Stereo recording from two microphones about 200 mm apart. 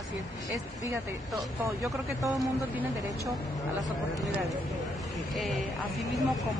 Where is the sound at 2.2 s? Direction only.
15° right (ahead or behind).